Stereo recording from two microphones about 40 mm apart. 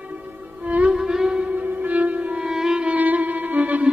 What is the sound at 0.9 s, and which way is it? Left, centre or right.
Music, centre.